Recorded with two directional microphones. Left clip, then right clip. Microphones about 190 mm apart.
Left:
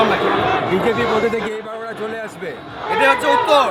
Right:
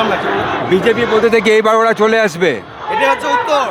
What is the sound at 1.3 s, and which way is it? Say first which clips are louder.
A man's voice: right 13 dB; 55° right (ahead or behind).